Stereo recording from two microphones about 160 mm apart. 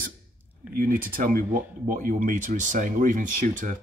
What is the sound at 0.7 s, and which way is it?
Speech, 60° right (ahead or behind).